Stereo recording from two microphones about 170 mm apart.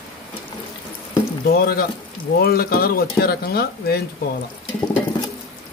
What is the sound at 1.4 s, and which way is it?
Frying, 65° left (ahead or behind).